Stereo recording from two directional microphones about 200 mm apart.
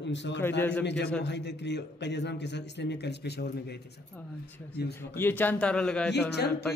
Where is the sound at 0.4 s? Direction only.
10° left (ahead or behind).